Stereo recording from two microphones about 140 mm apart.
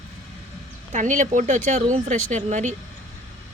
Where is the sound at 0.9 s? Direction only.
65° right (ahead or behind).